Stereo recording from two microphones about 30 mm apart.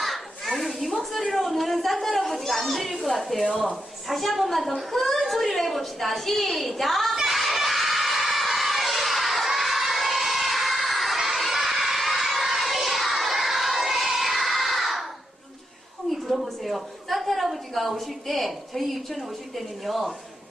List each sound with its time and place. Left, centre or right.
0.0 s children playing: centre
1.3 s a woman's voice: centre
7.2 s crowd: centre
16.0 s a sound: centre